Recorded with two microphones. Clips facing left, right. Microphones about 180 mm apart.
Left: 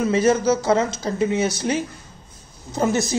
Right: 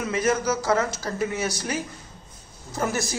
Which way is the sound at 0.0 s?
30° left (ahead or behind).